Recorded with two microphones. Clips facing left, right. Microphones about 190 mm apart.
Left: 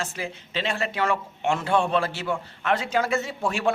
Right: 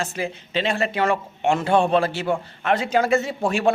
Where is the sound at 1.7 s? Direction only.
20° right (ahead or behind).